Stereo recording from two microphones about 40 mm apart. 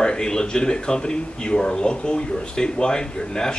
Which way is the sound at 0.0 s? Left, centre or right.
Centre.